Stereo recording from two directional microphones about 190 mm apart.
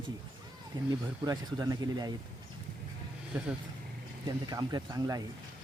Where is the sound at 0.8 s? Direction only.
20° right (ahead or behind).